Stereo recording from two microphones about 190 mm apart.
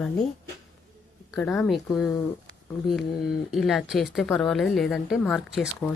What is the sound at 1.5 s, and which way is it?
Speech, centre (ahead or behind).